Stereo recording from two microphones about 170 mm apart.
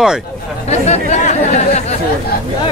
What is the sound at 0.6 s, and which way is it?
Chatter, 40° left (ahead or behind).